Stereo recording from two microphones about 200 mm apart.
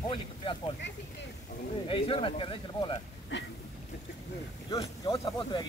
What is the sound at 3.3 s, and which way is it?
Speech, 65° left (ahead or behind).